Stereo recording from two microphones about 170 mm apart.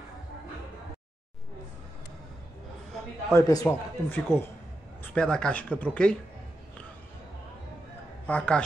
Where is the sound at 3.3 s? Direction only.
20° left (ahead or behind).